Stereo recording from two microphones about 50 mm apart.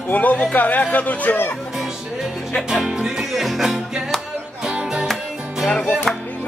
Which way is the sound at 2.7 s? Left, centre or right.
Centre.